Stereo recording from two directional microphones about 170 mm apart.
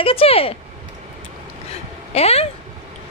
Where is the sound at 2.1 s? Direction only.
35° left (ahead or behind).